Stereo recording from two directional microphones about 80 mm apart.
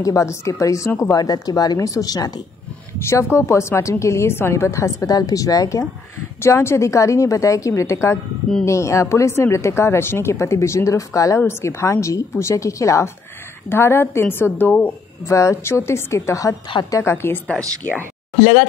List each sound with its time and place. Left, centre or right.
0.0 s a woman's voice: left
1.1 s a woman's voice: left
2.9 s a woman's voice: left
6.4 s a woman's voice: left
15.2 s a woman's voice: left